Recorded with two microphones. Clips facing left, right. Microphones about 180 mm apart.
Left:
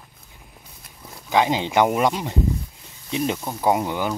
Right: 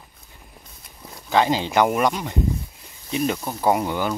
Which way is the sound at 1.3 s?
15° left (ahead or behind).